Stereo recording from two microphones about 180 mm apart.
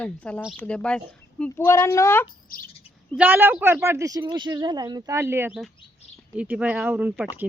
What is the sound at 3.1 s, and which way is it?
Speech, 10° right (ahead or behind).